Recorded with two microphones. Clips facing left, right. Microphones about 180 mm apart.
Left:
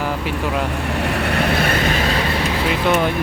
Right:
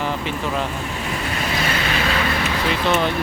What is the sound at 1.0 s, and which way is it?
Vehicle, 65° left (ahead or behind).